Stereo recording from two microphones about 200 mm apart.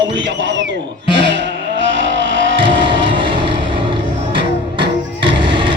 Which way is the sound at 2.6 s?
25° right (ahead or behind).